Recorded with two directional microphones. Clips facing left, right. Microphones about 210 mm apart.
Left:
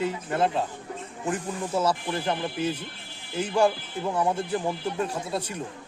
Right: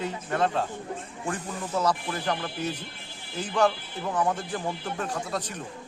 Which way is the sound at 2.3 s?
25° left (ahead or behind).